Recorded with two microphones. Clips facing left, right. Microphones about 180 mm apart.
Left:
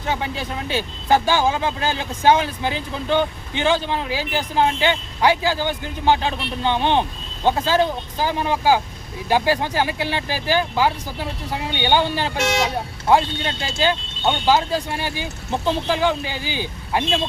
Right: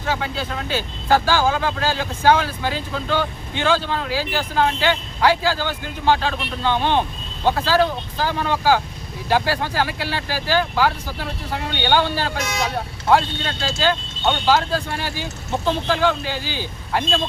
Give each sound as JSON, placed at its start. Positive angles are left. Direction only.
{"t": 0.0, "sound": "speech", "side_deg": 15}